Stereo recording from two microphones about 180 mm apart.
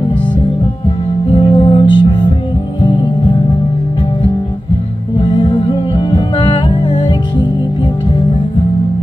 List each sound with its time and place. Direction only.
1.3 s music: 30° left (ahead or behind)
5.2 s music: 25° left (ahead or behind)